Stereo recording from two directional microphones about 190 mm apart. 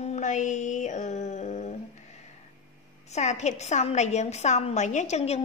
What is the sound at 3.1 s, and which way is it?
Speech, 35° left (ahead or behind).